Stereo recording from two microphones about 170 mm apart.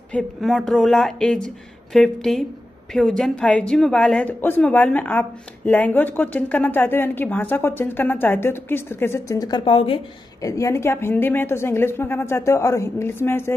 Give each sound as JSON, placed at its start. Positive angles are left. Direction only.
{"t": 0.1, "sound": "speech", "side_deg": 0}
{"t": 9.7, "sound": "a woman's voice", "side_deg": 35}
{"t": 10.4, "sound": "speech", "side_deg": 20}